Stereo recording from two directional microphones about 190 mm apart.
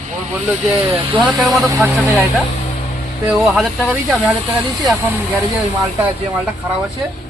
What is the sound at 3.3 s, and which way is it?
Speech, centre (ahead or behind).